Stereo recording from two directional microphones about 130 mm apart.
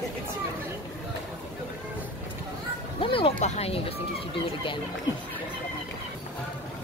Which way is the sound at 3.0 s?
45° left (ahead or behind).